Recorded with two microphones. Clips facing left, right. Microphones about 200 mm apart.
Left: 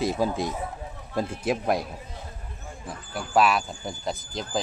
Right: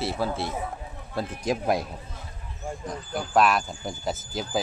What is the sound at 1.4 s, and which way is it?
Speech, centre (ahead or behind).